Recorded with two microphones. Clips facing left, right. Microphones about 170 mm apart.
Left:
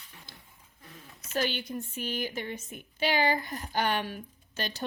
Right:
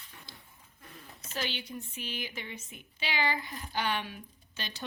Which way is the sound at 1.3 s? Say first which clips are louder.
Left 6 dB; 50° left (ahead or behind).